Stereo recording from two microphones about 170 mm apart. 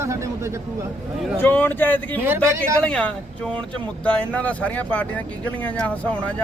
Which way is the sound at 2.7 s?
5° left (ahead or behind).